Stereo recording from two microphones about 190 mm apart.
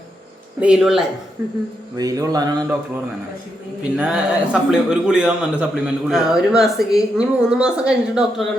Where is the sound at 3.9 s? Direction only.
5° right (ahead or behind).